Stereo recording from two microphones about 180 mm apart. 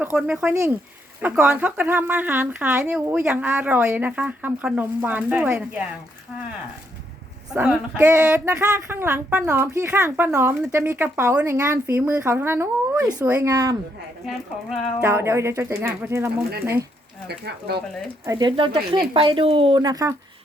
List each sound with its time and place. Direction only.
0.0 s speech: 10° right (ahead or behind)
7.5 s speech: 5° right (ahead or behind)
14.3 s speech: centre (ahead or behind)
15.0 s speech: 15° right (ahead or behind)
17.2 s speech: 65° right (ahead or behind)
18.3 s speech: 25° right (ahead or behind)